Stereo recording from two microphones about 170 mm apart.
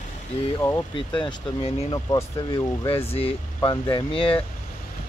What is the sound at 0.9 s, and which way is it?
Speech, 30° left (ahead or behind).